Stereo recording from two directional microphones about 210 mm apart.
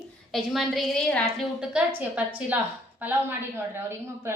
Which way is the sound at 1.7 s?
5° right (ahead or behind).